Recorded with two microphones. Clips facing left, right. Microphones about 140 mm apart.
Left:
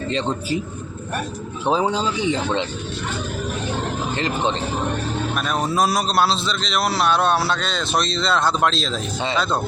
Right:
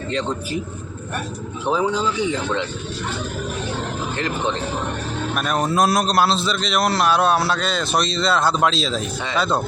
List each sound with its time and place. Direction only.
1.6 s speech: 25° left (ahead or behind)
5.4 s a man's voice: centre (ahead or behind)